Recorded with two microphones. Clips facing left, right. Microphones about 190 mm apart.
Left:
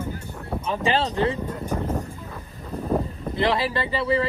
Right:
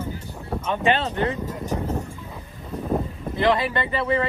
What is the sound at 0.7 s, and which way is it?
Speech, 35° left (ahead or behind).